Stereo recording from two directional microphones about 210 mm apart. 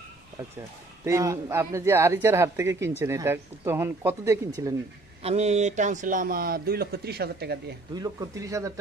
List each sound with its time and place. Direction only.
1.0 s speech: 15° right (ahead or behind)
5.2 s speech: 30° right (ahead or behind); by 7.7 s 50° right (ahead or behind)
7.9 s speech: 15° right (ahead or behind)